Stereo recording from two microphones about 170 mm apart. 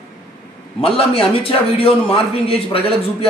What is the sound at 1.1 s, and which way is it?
A man's voice, 30° left (ahead or behind).